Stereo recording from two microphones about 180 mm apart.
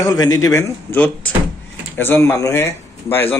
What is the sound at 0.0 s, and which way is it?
Speech, 20° left (ahead or behind).